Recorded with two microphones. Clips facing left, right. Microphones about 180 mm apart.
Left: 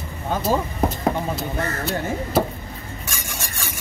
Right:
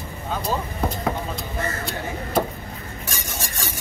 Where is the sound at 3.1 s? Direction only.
35° right (ahead or behind).